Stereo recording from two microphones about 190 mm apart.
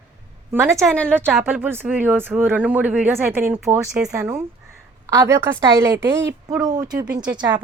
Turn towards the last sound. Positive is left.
turn(degrees=-25)  # may be behind; listen again after turning